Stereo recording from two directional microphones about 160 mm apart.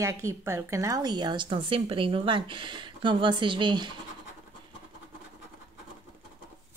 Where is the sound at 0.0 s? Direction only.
20° right (ahead or behind).